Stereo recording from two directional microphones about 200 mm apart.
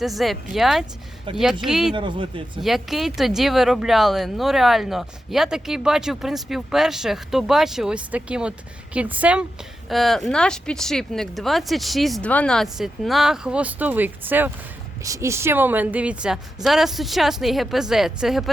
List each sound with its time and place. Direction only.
0.0 s speech: centre (ahead or behind)
1.3 s speech: 25° right (ahead or behind)
1.6 s speech: centre (ahead or behind)
2.0 s speech: 25° right (ahead or behind)
2.6 s speech: centre (ahead or behind)